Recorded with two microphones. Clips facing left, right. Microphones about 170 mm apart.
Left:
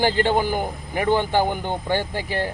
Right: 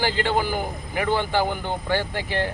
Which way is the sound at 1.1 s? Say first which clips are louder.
Left 3 dB; 15° left (ahead or behind).